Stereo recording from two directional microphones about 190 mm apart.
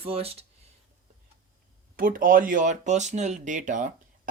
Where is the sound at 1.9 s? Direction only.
45° right (ahead or behind).